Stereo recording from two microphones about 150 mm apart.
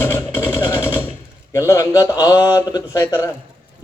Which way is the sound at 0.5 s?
30° left (ahead or behind).